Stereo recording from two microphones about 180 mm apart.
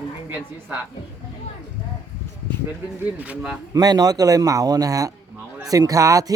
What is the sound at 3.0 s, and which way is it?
Speech, 5° right (ahead or behind).